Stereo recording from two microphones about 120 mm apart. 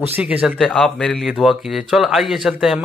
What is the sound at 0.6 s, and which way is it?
A man's voice, 5° left (ahead or behind).